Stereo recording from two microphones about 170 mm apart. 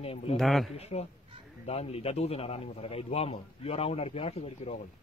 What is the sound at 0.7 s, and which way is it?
A man's voice, 40° left (ahead or behind).